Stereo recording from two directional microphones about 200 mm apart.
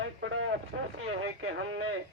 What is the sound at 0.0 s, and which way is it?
Vehicle, 80° right.